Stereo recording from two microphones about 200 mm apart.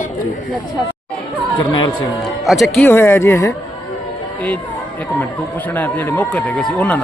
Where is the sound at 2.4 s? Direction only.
Centre (ahead or behind).